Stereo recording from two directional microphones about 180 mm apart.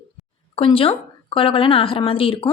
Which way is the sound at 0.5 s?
30° left (ahead or behind).